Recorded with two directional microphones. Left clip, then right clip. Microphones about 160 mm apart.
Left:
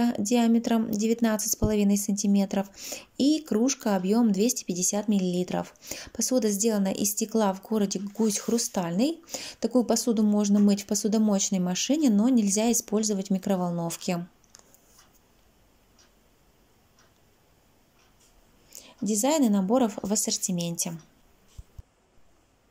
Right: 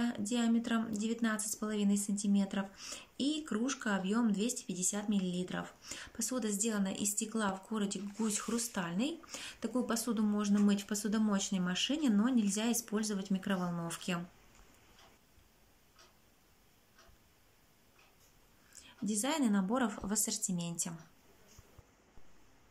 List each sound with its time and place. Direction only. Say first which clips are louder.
0.3 s a woman's voice: left 10 dB; 35° left (ahead or behind)
18.7 s a woman's voice: left 10 dB; 25° left (ahead or behind)